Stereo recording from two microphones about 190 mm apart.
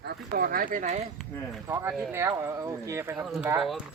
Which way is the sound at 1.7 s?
15° right (ahead or behind).